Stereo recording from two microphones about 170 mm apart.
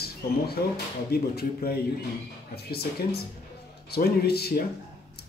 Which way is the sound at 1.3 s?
65° left (ahead or behind).